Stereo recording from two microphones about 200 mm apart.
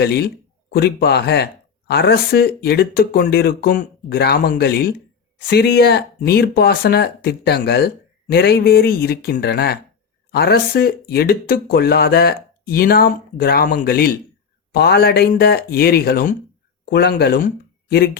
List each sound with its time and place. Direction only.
0.0 s speech: 55° left (ahead or behind)